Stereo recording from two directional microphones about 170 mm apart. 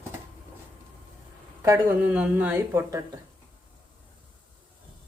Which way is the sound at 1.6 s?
15° right (ahead or behind).